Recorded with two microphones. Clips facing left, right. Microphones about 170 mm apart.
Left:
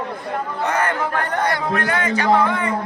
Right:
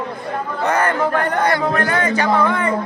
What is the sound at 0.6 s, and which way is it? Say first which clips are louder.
A man's voice: right 5 dB; 45° right (ahead or behind).